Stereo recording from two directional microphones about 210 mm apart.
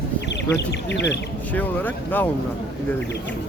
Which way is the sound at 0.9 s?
55° left (ahead or behind).